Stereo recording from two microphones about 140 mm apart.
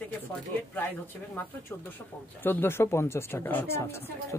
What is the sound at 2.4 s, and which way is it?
Speech, 15° left (ahead or behind).